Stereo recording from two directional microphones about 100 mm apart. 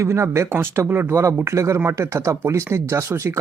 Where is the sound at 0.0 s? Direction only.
30° right (ahead or behind).